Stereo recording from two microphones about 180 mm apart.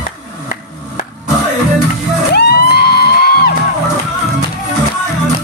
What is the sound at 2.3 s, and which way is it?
Music, 60° left (ahead or behind).